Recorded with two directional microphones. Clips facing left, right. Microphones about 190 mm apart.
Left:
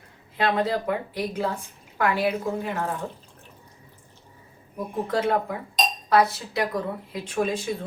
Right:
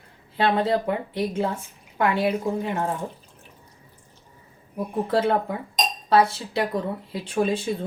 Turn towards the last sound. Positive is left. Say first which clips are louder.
# right 2 dB
turn(degrees=-30)  # may be behind; listen again after turning